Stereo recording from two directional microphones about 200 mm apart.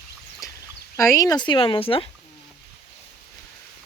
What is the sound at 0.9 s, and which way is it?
Speech, 15° left (ahead or behind).